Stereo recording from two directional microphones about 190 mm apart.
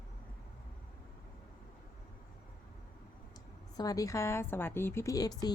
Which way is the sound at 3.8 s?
20° left (ahead or behind).